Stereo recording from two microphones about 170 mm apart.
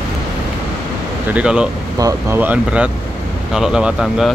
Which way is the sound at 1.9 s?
20° right (ahead or behind).